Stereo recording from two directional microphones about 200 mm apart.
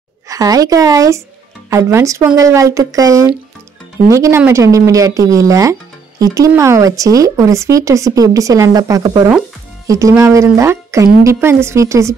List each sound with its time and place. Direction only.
0.3 s speech: 20° right (ahead or behind)